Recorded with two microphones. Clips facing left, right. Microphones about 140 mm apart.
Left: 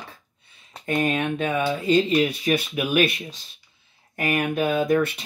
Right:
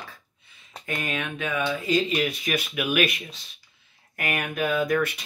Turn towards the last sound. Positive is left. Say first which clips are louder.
# left 3 dB
turn(degrees=30)  # may be behind; listen again after turning